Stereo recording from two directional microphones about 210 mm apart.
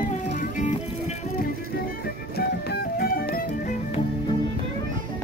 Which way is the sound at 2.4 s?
45° left (ahead or behind).